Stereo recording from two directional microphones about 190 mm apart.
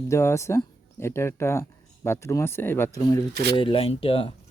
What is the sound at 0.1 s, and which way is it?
Speech, 15° left (ahead or behind).